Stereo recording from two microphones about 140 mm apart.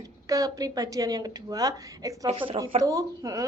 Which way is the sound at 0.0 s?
25° right (ahead or behind).